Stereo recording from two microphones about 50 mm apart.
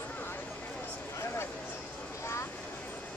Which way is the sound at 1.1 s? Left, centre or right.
Left.